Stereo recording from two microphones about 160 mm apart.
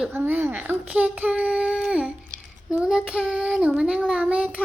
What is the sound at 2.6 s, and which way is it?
Child singing, 5° right (ahead or behind).